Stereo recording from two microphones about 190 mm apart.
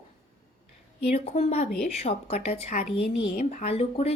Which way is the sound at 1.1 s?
35° left (ahead or behind).